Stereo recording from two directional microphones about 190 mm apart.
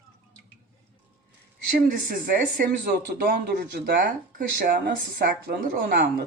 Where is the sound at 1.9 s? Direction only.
45° right (ahead or behind).